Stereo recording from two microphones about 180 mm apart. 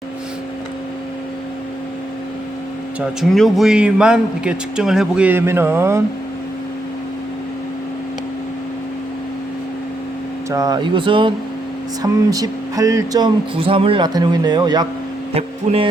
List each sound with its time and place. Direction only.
3.0 s a man's voice: centre (ahead or behind)
10.5 s music: 20° right (ahead or behind)
15.3 s speech: 35° right (ahead or behind)